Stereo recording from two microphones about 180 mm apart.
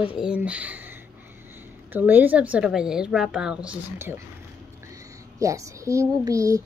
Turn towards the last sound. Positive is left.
turn(degrees=-20)  # may be behind; listen again after turning